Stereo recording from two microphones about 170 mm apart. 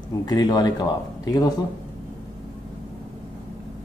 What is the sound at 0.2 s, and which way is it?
Speech, 25° left (ahead or behind).